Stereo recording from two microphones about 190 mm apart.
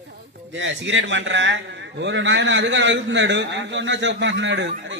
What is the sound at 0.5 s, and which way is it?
A man's voice, 75° right (ahead or behind).